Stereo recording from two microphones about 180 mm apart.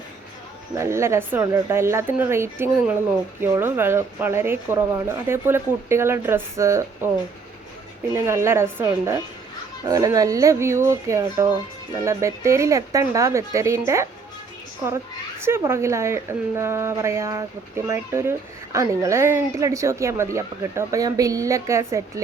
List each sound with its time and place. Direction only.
0.7 s a woman's voice: 15° right (ahead or behind)
8.1 s a woman's voice: 15° right (ahead or behind)
15.4 s a woman's voice: 15° right (ahead or behind)